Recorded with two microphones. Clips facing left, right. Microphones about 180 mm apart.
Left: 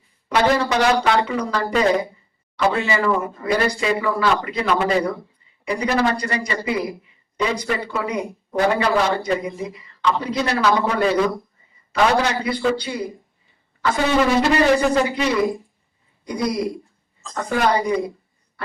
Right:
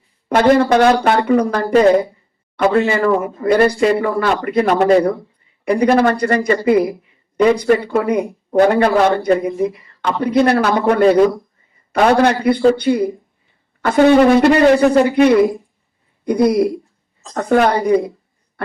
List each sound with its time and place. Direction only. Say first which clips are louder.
0.3 s speech: right 7 dB; 50° right (ahead or behind)